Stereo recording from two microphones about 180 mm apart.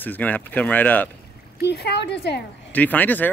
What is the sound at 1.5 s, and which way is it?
Speech, 65° left (ahead or behind).